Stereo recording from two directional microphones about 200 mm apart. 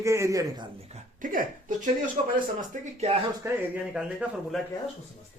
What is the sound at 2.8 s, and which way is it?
Speech, 30° right (ahead or behind).